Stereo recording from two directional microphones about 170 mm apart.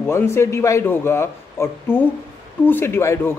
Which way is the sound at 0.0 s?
15° left (ahead or behind).